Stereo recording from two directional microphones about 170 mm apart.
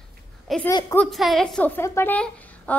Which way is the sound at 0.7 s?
20° left (ahead or behind).